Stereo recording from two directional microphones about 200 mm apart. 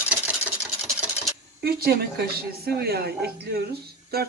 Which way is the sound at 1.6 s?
50° right (ahead or behind).